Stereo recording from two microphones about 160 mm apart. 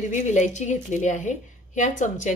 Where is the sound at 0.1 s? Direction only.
50° left (ahead or behind).